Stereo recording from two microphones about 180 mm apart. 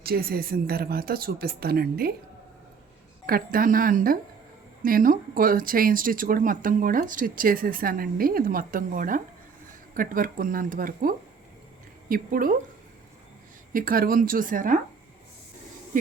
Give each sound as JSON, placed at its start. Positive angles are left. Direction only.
{"t": 0.0, "sound": "speech", "side_deg": -55}
{"t": 3.2, "sound": "speech", "side_deg": -55}
{"t": 13.7, "sound": "speech", "side_deg": -55}